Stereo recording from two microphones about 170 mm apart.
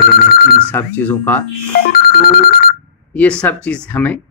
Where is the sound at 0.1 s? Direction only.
60° left (ahead or behind).